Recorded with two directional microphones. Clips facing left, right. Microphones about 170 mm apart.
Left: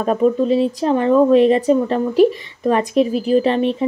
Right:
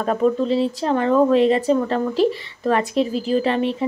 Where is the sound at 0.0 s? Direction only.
15° left (ahead or behind).